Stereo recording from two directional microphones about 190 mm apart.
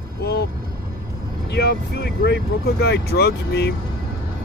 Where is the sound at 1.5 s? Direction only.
60° left (ahead or behind).